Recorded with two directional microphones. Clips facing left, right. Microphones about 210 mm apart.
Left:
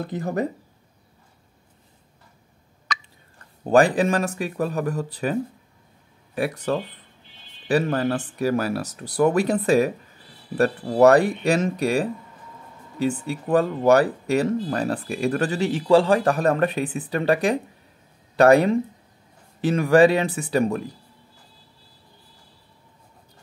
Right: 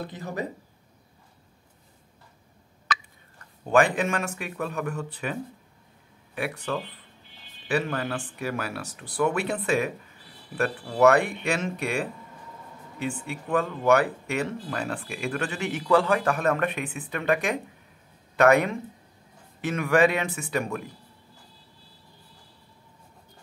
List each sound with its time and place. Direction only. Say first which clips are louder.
0.0 s speech: left 7 dB; 50° left (ahead or behind)
2.9 s a sound: right 1 dB; 5° right (ahead or behind)
3.6 s speech: left 5 dB; 35° left (ahead or behind)